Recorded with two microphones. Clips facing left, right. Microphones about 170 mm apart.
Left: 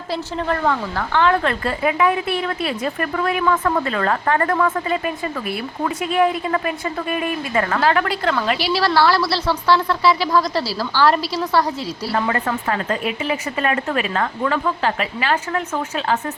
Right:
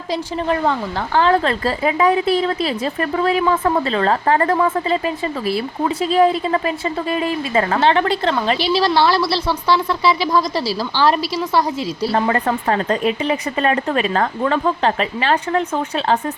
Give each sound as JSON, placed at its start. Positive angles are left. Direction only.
{"t": 0.1, "sound": "speech", "side_deg": -15}
{"t": 1.1, "sound": "a woman's voice", "side_deg": -35}
{"t": 12.1, "sound": "speech", "side_deg": -35}